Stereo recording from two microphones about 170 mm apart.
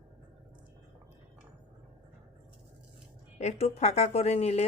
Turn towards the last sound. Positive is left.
turn(degrees=40)  # may be behind; listen again after turning